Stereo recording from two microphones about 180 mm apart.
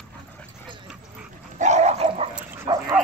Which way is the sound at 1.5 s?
40° right (ahead or behind).